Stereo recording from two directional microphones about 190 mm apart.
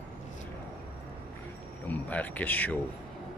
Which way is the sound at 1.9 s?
10° left (ahead or behind).